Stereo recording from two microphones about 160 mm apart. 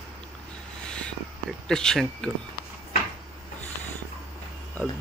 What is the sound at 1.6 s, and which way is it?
Speech, 5° left (ahead or behind).